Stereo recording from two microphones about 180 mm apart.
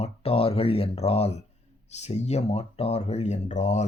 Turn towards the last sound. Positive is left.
turn(degrees=40)  # may be behind; listen again after turning